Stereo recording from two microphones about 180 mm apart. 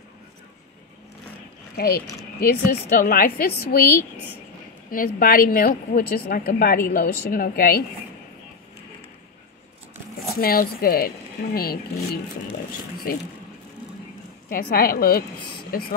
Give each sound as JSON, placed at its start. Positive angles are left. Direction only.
{"t": 1.8, "sound": "a woman's voice", "side_deg": 60}
{"t": 4.9, "sound": "a woman's voice", "side_deg": 50}
{"t": 10.4, "sound": "a woman's voice", "side_deg": 55}
{"t": 14.5, "sound": "a woman's voice", "side_deg": 55}